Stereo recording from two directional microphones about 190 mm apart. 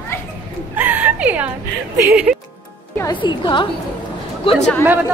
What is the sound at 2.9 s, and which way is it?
Speech, 20° left (ahead or behind).